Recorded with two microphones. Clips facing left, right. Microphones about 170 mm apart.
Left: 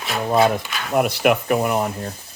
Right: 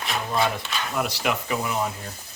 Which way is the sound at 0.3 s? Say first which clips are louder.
Left 9 dB; 55° left (ahead or behind).